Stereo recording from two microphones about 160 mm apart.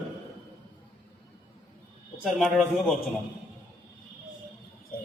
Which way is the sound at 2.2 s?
Centre (ahead or behind).